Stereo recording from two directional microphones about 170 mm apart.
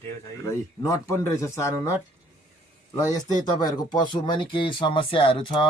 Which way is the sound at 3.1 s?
20° left (ahead or behind).